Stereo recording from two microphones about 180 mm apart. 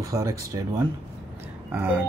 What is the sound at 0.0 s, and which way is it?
Speech, 15° right (ahead or behind).